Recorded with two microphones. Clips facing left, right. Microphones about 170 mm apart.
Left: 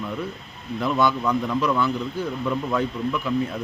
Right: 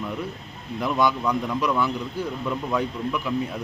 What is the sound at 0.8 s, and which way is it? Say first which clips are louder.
Speech: left 1 dB; 15° right (ahead or behind).